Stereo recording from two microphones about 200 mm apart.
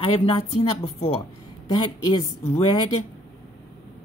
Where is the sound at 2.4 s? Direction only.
15° left (ahead or behind).